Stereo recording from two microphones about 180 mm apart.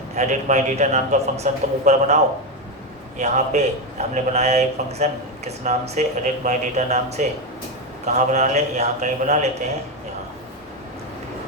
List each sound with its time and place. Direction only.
0.2 s a man's voice: 40° right (ahead or behind)
3.2 s a man's voice: 40° right (ahead or behind)